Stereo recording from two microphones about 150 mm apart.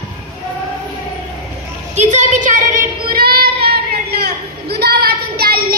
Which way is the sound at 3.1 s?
90° right.